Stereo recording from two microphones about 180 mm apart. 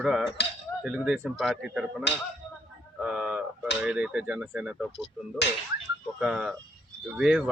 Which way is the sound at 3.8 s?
5° right (ahead or behind).